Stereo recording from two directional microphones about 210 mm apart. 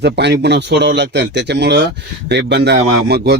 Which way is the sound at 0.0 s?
55° right (ahead or behind).